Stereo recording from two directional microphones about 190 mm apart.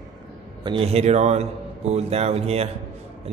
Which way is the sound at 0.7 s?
30° right (ahead or behind).